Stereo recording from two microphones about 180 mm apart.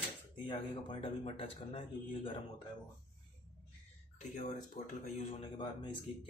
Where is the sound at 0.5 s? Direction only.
30° left (ahead or behind).